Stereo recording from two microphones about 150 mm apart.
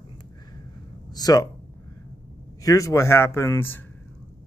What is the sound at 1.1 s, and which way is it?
Speech, 25° left (ahead or behind).